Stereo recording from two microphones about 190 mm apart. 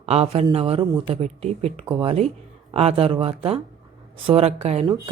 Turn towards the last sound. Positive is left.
turn(degrees=-35)  # may be behind; listen again after turning